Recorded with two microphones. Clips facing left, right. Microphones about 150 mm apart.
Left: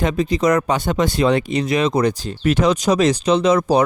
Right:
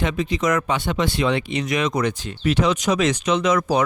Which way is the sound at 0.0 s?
40° left (ahead or behind).